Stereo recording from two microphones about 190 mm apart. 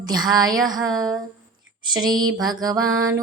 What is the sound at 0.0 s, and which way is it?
A woman's voice, 20° right (ahead or behind).